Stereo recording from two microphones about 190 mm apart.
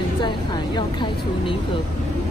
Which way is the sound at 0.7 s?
25° left (ahead or behind).